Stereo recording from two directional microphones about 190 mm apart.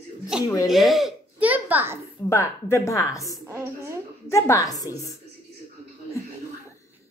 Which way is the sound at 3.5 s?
15° right (ahead or behind).